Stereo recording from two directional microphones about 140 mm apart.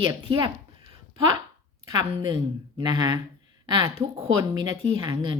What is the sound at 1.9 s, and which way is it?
A woman's voice, 30° right (ahead or behind).